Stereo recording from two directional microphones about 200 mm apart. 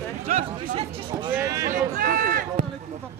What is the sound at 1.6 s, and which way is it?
Speech, 45° right (ahead or behind).